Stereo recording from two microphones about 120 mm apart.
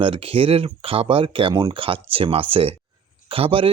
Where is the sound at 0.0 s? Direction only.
50° right (ahead or behind).